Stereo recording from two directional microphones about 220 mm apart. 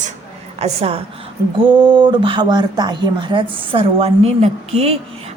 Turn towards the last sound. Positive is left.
turn(degrees=-30)  # may be behind; listen again after turning